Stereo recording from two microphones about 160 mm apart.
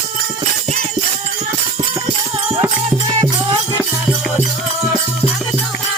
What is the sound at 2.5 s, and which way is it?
Music, 15° right (ahead or behind).